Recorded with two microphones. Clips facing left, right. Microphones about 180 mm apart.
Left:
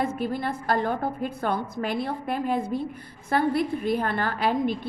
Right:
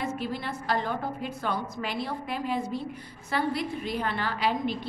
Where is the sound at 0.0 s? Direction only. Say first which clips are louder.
Left 5 dB; 50° left (ahead or behind).